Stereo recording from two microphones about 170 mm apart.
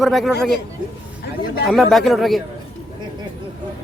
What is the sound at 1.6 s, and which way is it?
Speech, centre (ahead or behind).